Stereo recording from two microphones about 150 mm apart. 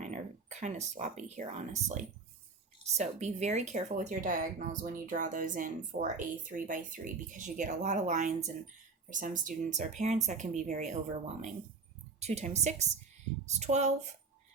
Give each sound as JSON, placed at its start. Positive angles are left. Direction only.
{"t": 0.0, "sound": "speech", "side_deg": -55}
{"t": 12.2, "sound": "speech", "side_deg": -45}